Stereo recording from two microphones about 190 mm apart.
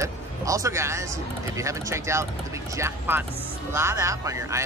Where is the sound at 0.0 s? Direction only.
15° right (ahead or behind).